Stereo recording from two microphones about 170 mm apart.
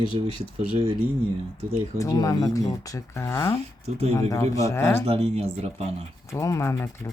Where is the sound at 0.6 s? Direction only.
35° right (ahead or behind).